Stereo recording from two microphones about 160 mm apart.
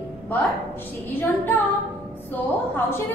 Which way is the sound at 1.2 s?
10° left (ahead or behind).